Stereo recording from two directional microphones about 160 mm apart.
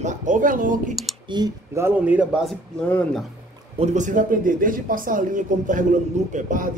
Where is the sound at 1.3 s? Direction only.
20° right (ahead or behind); by 3.2 s 10° left (ahead or behind).